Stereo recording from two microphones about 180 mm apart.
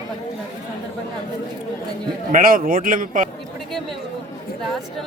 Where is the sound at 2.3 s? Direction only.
50° right (ahead or behind).